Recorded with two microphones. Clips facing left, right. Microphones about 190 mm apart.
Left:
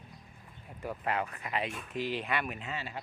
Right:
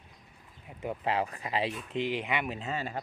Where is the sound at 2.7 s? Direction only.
45° right (ahead or behind).